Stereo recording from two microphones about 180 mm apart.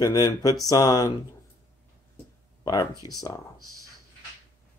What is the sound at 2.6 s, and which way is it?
Speech, 20° left (ahead or behind).